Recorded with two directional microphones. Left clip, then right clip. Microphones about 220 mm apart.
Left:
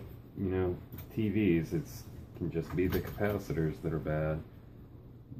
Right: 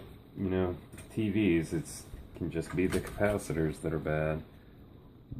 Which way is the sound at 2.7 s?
35° right (ahead or behind).